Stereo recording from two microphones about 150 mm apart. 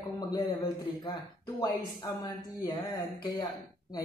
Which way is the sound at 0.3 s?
25° left (ahead or behind).